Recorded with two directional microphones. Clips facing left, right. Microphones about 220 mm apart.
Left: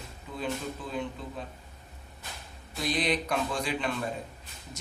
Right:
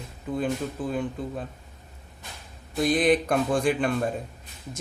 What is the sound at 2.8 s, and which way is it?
Speech, 50° right (ahead or behind).